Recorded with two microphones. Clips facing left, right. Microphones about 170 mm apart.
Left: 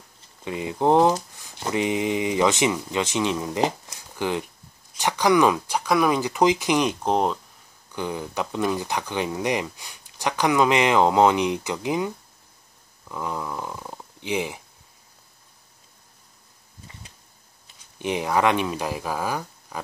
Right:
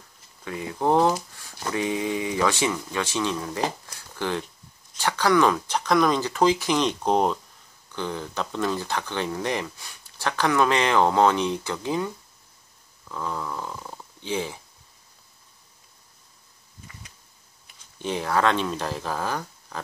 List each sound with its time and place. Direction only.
0.4 s speech: 20° left (ahead or behind); by 7.3 s centre (ahead or behind)
7.9 s speech: 15° left (ahead or behind)
13.1 s speech: 15° left (ahead or behind)
17.9 s speech: 15° left (ahead or behind)